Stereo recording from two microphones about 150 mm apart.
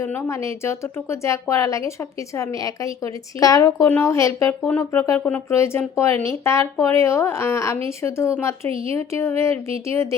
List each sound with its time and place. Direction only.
0.0 s a woman's voice: 15° left (ahead or behind)